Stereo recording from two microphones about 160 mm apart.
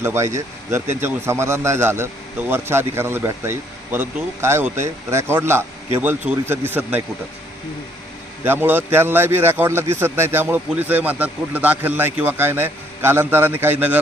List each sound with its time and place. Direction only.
0.0 s speech: 15° right (ahead or behind)
8.4 s speech: 15° right (ahead or behind)